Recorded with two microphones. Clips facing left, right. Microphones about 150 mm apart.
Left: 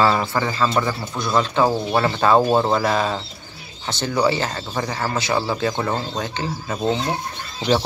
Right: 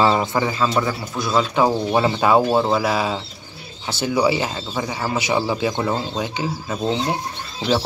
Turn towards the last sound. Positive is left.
turn(degrees=-5)  # may be behind; listen again after turning